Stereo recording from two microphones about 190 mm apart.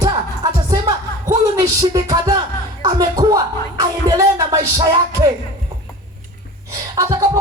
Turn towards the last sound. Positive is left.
turn(degrees=-15)  # may be behind; listen again after turning